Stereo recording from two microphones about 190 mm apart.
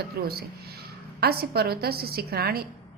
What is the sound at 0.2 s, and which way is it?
A woman's voice, 55° right (ahead or behind).